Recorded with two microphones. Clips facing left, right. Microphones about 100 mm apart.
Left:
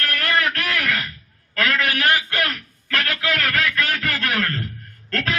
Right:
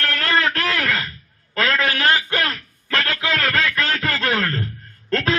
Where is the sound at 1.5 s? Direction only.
25° right (ahead or behind).